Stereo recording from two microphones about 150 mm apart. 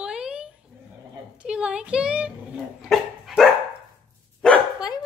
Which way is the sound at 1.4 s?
5° right (ahead or behind).